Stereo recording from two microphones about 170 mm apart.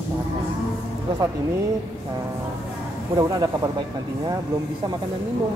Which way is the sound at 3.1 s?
20° right (ahead or behind).